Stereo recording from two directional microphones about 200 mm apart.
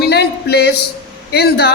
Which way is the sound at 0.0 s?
55° left (ahead or behind).